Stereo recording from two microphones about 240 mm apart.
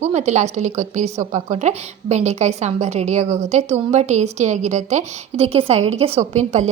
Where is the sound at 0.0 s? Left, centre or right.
Right.